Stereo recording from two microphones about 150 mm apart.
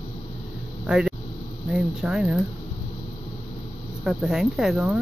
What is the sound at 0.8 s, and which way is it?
Speech, 5° right (ahead or behind).